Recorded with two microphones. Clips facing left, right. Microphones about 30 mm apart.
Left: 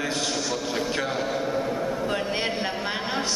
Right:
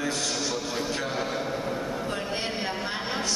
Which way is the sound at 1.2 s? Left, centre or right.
Centre.